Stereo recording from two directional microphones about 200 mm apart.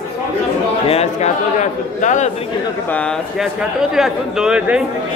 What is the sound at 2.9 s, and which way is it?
Speech, 5° left (ahead or behind).